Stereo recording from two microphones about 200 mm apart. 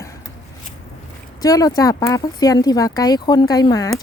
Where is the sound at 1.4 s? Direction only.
20° left (ahead or behind).